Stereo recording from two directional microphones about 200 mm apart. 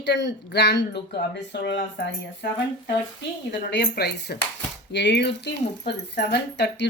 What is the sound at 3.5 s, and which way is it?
Speech, 60° left (ahead or behind).